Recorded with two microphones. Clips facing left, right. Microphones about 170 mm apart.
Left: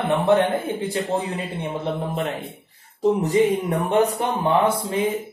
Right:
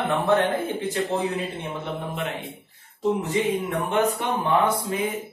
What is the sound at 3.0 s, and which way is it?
Music, 40° left (ahead or behind).